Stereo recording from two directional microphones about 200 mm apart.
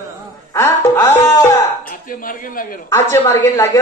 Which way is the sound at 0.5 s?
15° left (ahead or behind).